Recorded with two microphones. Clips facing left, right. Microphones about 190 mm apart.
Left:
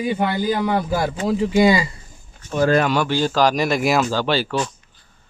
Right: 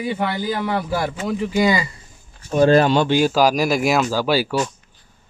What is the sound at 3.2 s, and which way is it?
Speech, 5° right (ahead or behind).